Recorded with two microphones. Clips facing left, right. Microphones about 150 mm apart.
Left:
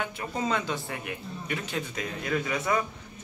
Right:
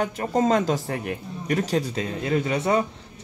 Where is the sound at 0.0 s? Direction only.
45° right (ahead or behind).